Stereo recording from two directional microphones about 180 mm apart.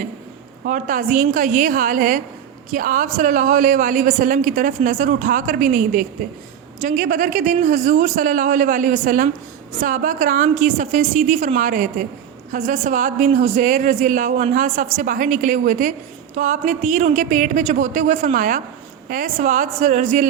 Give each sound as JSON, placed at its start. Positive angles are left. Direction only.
{"t": 0.6, "sound": "a woman's voice", "side_deg": -45}